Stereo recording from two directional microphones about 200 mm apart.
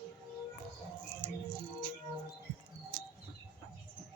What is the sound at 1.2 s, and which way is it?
Music, 25° right (ahead or behind).